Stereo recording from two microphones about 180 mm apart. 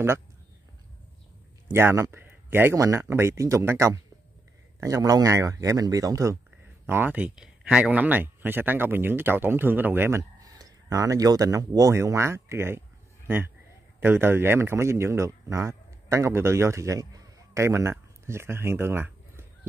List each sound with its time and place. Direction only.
1.7 s speech: 15° right (ahead or behind)
13.9 s speech: 10° right (ahead or behind)